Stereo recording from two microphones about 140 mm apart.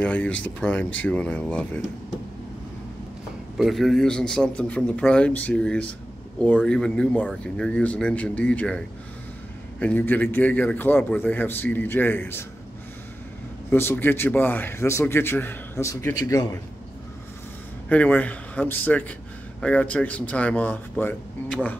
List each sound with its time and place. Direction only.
0.0 s a man's voice: 10° left (ahead or behind)
3.5 s a man's voice: centre (ahead or behind); by 12.4 s 15° left (ahead or behind)
13.7 s a man's voice: 15° left (ahead or behind)
17.8 s a man's voice: 10° left (ahead or behind)